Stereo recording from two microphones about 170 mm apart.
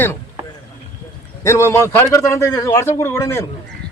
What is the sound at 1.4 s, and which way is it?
A man's voice, 15° left (ahead or behind).